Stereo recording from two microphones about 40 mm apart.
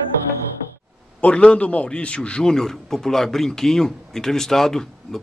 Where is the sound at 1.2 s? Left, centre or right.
Left.